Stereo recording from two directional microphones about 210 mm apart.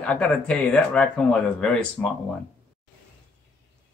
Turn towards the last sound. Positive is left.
turn(degrees=5)  # may be behind; listen again after turning